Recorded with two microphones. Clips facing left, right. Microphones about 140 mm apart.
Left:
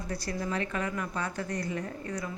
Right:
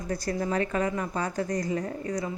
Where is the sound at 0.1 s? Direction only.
45° right (ahead or behind).